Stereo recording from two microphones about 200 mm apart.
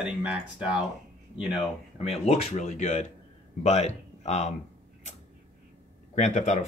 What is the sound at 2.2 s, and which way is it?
Speech, 35° left (ahead or behind).